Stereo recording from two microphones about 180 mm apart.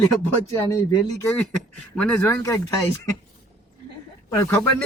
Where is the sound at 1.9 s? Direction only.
Centre (ahead or behind).